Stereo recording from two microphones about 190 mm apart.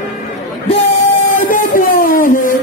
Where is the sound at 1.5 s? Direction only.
45° left (ahead or behind).